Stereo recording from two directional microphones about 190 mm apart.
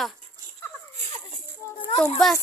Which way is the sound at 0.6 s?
15° left (ahead or behind).